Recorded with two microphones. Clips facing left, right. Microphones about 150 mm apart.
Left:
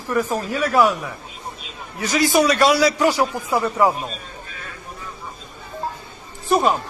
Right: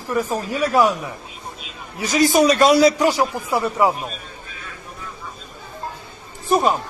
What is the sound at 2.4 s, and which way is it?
Speech, 25° right (ahead or behind).